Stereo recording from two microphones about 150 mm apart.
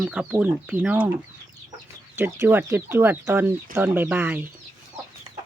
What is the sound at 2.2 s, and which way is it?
Speech, 15° right (ahead or behind).